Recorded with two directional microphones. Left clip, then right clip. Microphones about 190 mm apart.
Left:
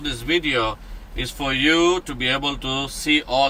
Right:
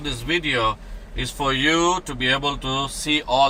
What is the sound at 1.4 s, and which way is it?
Speech, 20° right (ahead or behind).